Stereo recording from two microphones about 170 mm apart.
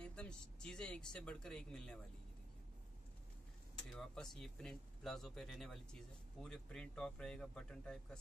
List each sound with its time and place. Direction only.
0.0 s speech: 5° left (ahead or behind)
3.9 s speech: 5° left (ahead or behind)